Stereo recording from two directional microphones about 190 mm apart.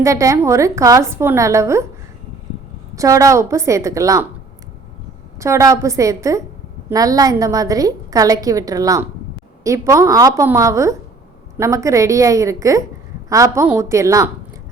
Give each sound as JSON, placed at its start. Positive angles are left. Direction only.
{"t": 0.0, "sound": "a woman's voice", "side_deg": -15}
{"t": 2.9, "sound": "a woman's voice", "side_deg": -15}
{"t": 5.4, "sound": "a woman's voice", "side_deg": -15}